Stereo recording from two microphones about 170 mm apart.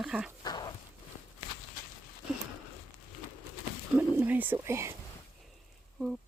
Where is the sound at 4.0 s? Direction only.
10° right (ahead or behind).